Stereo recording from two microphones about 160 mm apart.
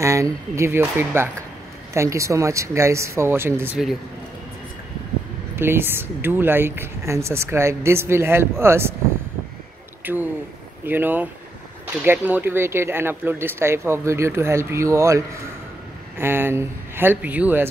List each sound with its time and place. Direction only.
0.0 s speech: 20° right (ahead or behind)
5.6 s speech: 15° right (ahead or behind)
10.1 s speech: 10° right (ahead or behind)